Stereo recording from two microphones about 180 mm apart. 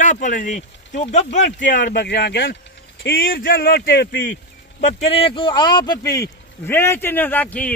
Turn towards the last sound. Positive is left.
turn(degrees=5)  # may be behind; listen again after turning